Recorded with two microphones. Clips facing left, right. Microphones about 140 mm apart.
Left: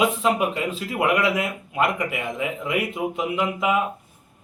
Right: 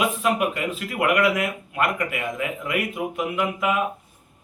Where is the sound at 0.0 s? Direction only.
25° left (ahead or behind).